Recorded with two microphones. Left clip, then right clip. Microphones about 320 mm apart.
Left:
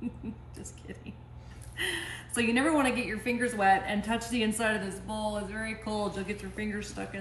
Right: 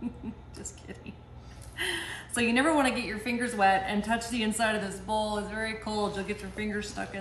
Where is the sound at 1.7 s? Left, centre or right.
Centre.